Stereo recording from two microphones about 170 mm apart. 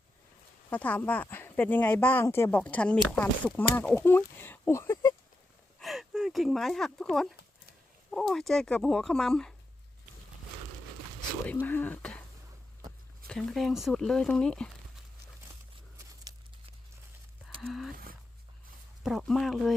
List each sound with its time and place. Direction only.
0.7 s speech: 10° left (ahead or behind)
5.8 s speech: centre (ahead or behind)
11.6 s speech: 10° left (ahead or behind)
13.2 s speech: 5° left (ahead or behind)
17.6 s a sound: centre (ahead or behind)
17.9 s a sound: 55° right (ahead or behind)
19.0 s speech: centre (ahead or behind)